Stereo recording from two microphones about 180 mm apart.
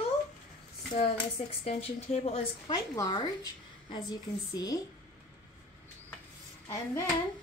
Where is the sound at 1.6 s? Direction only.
35° left (ahead or behind).